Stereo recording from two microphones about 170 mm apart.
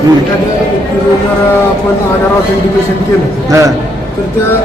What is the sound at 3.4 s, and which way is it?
Speech, 20° right (ahead or behind).